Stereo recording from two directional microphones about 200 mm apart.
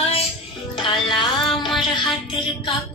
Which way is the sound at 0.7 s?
25° left (ahead or behind).